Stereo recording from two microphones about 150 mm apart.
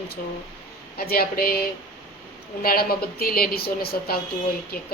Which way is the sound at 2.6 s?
90° left.